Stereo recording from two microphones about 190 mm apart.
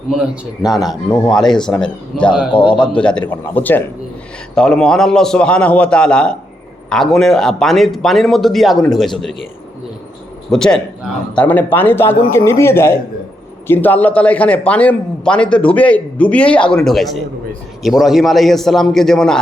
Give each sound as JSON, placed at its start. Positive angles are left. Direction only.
{"t": 0.1, "sound": "speech", "side_deg": 0}
{"t": 2.5, "sound": "a man's voice", "side_deg": 25}
{"t": 2.8, "sound": "a man's voice", "side_deg": 5}
{"t": 10.5, "sound": "a man's voice", "side_deg": 5}